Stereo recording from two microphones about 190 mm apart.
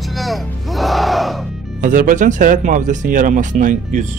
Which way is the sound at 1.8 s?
45° right (ahead or behind).